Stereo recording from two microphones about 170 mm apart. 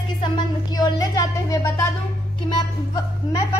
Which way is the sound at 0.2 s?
25° left (ahead or behind).